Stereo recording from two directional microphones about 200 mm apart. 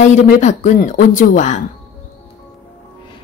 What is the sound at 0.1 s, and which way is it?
A woman's voice, 35° left (ahead or behind).